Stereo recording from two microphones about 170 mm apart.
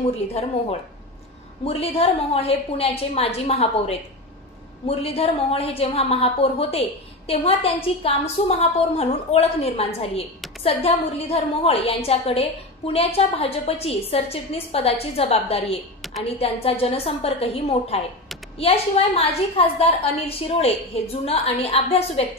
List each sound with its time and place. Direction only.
0.3 s a woman's voice: 40° left (ahead or behind)
16.0 s a sound: centre (ahead or behind)
16.3 s a woman's voice: 35° left (ahead or behind)